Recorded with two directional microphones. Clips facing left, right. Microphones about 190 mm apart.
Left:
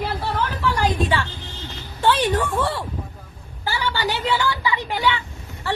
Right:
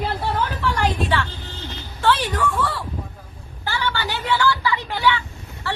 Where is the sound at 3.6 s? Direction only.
15° left (ahead or behind).